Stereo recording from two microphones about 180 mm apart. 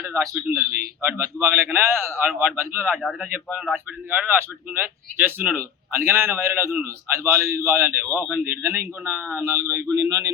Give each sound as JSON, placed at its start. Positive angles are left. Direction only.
{"t": 0.0, "sound": "a man's voice", "side_deg": -15}
{"t": 2.3, "sound": "speech", "side_deg": 0}
{"t": 2.6, "sound": "a man's voice", "side_deg": -10}
{"t": 2.9, "sound": "a man's voice", "side_deg": 0}